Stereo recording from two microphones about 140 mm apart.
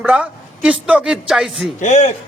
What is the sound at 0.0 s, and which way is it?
A man's voice, 5° right (ahead or behind).